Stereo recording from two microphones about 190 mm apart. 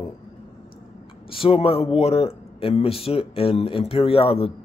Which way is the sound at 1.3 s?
30° left (ahead or behind).